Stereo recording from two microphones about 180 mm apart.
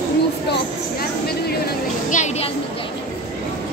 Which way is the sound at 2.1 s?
40° left (ahead or behind).